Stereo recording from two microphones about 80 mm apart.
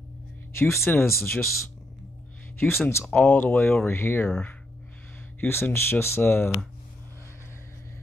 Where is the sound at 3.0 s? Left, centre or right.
Centre.